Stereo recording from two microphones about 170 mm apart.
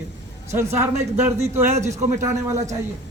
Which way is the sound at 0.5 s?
15° right (ahead or behind).